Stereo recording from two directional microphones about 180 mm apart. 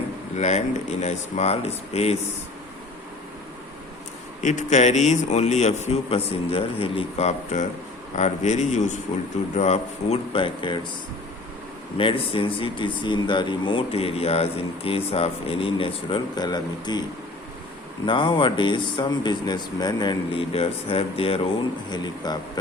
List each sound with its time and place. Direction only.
0.3 s a man's voice: 40° left (ahead or behind)
4.4 s a man's voice: 40° left (ahead or behind)
11.9 s speech: 30° left (ahead or behind)